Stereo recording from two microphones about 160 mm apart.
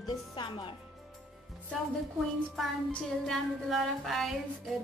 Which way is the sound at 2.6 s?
Centre (ahead or behind).